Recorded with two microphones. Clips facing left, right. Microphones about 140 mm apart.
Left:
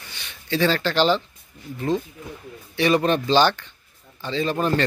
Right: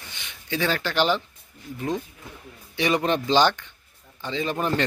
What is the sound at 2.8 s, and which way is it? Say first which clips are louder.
A man's voice: left 3 dB; 15° right (ahead or behind).